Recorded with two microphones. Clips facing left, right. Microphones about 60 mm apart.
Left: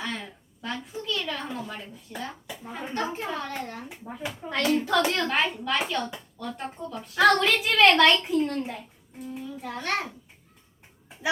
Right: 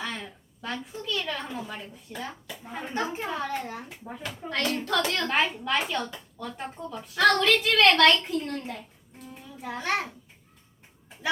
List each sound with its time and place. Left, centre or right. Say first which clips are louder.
0.0 s a sound: left 1 dB; centre
1.0 s a child's voice: even; centre
4.9 s a child's voice: left 3 dB; centre
5.2 s speech: even; centre
7.3 s a child's voice: even; centre
9.4 s a child's voice: right 1 dB; centre